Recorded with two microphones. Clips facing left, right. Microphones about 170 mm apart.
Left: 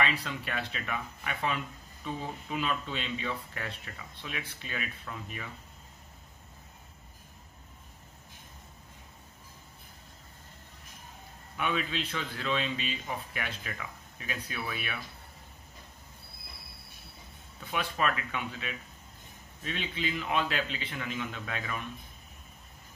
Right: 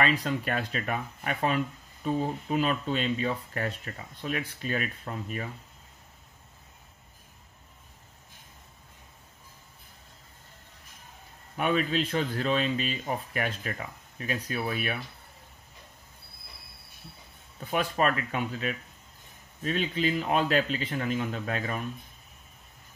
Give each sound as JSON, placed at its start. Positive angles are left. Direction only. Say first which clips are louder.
{"t": 0.0, "sound": "speech", "louder": "right 5 dB", "side_deg": -45}
{"t": 11.5, "sound": "speech", "louder": "right 6 dB", "side_deg": -40}
{"t": 17.6, "sound": "a man's voice", "louder": "right 5 dB", "side_deg": -40}